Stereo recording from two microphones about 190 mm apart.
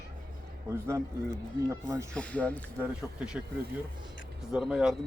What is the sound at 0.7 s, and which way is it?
A man's voice, 15° right (ahead or behind).